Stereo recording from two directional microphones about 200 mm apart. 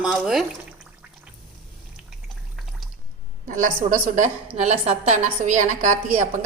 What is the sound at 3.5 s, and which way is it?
A woman's voice, 40° right (ahead or behind).